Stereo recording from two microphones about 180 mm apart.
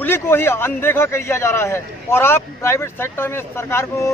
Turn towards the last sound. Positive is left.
turn(degrees=15)  # may be behind; listen again after turning